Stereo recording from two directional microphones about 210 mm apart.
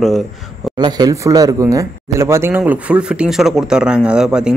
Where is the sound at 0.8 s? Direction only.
20° right (ahead or behind).